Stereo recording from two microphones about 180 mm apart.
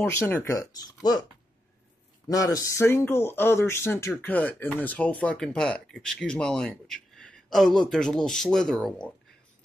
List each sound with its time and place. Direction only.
0.0 s speech: 15° left (ahead or behind)
2.2 s speech: 20° left (ahead or behind)